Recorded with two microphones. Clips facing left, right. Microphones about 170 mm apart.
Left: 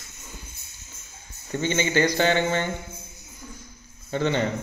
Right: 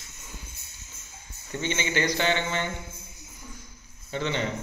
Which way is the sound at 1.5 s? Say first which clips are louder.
Left 5 dB; 40° left (ahead or behind).